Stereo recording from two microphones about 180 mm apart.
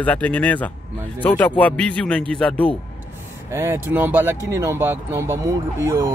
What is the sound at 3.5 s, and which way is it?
Speech, 15° right (ahead or behind).